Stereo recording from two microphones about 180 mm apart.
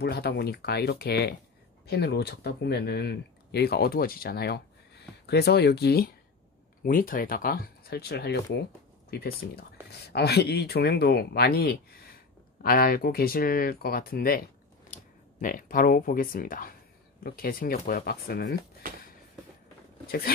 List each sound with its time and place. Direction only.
0.0 s speech: 60° left (ahead or behind)
14.9 s a sound: 45° left (ahead or behind)
15.4 s speech: 50° left (ahead or behind)
20.1 s speech: 55° left (ahead or behind)